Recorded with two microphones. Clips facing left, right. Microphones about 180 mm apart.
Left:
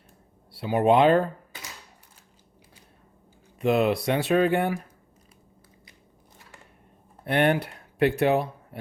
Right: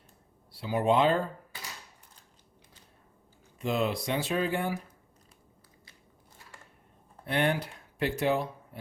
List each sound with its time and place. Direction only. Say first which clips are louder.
0.5 s speech: left 5 dB; 60° left (ahead or behind)
3.6 s speech: left 7 dB; 65° left (ahead or behind)
7.3 s speech: left 6 dB; 60° left (ahead or behind)